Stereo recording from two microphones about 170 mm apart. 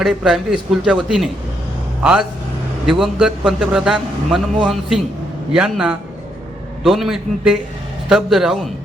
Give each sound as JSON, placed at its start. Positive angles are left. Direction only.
{"t": 0.0, "sound": "a man's voice", "side_deg": -5}
{"t": 2.8, "sound": "a man's voice", "side_deg": -5}